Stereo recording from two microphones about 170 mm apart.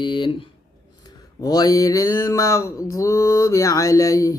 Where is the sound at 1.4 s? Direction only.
20° left (ahead or behind).